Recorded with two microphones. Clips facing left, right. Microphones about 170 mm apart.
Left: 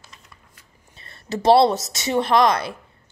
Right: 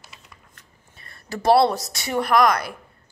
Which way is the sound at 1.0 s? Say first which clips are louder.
Left 3 dB; 25° left (ahead or behind).